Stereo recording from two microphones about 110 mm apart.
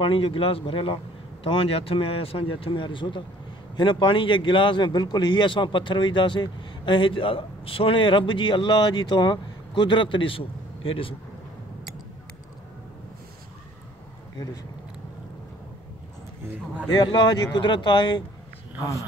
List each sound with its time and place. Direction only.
0.0 s speech: 55° left (ahead or behind)
16.9 s speech: 40° left (ahead or behind)